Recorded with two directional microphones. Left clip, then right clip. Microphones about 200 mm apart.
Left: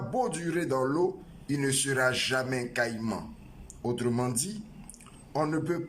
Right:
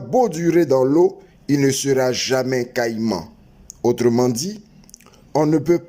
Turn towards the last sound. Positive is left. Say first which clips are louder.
# right 12 dB
turn(degrees=-30)  # may be behind; listen again after turning